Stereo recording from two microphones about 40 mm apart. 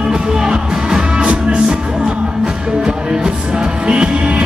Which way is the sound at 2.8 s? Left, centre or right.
Centre.